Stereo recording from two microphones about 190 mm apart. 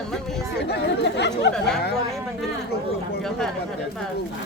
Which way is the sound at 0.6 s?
65° left (ahead or behind).